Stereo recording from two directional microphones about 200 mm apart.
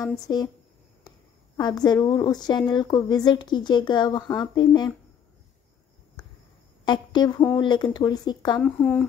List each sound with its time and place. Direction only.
0.3 s speech: 20° left (ahead or behind)
1.6 s speech: 20° left (ahead or behind)
6.8 s a woman's voice: 20° left (ahead or behind)
8.5 s speech: 5° left (ahead or behind)